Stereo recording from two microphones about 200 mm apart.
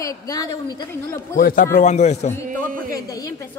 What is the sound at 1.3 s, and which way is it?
Speech, 45° left (ahead or behind).